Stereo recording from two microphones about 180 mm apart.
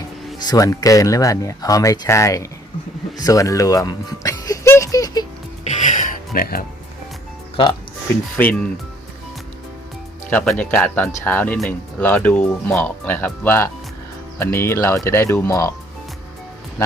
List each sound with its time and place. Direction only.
0.3 s speech: 20° left (ahead or behind)
3.2 s music: 20° left (ahead or behind)
5.6 s music: 45° left (ahead or behind)
7.5 s speech: 25° left (ahead or behind)
10.2 s speech: 10° left (ahead or behind)